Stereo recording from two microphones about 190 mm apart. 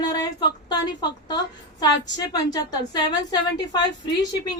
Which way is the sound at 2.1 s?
20° left (ahead or behind).